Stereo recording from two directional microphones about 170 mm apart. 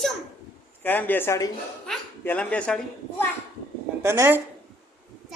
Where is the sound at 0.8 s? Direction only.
10° left (ahead or behind).